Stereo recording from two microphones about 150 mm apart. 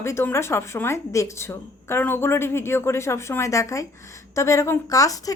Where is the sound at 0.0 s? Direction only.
15° left (ahead or behind).